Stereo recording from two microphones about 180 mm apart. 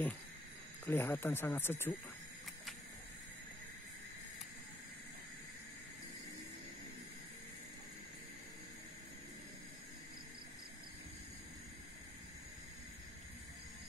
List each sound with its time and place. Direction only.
0.8 s speech: 10° left (ahead or behind)